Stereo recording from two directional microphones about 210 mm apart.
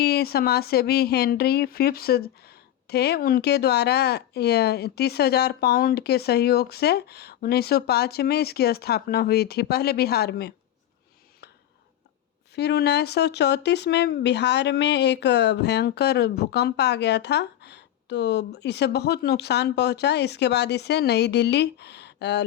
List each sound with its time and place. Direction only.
0.0 s speech: 50° left (ahead or behind)
12.5 s speech: 50° left (ahead or behind)